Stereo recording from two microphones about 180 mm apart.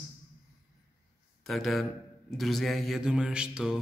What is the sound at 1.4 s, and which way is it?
A man's voice, centre (ahead or behind).